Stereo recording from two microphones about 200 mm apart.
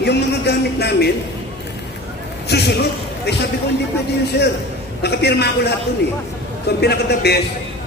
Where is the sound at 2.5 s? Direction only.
55° left (ahead or behind).